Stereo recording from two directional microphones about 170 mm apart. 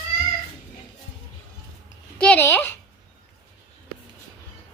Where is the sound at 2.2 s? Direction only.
10° left (ahead or behind).